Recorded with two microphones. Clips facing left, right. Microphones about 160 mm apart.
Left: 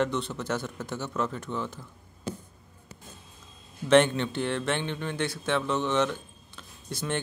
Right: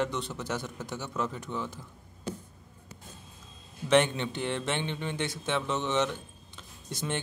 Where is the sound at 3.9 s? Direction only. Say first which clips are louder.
Left 4 dB; 15° right (ahead or behind).